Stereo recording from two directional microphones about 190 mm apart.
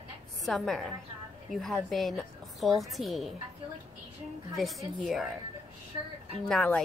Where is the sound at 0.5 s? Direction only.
Centre (ahead or behind).